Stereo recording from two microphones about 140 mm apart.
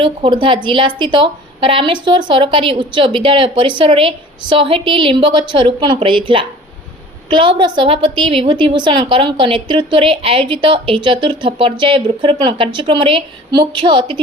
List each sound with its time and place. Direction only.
0.0 s a woman's voice: 35° right (ahead or behind)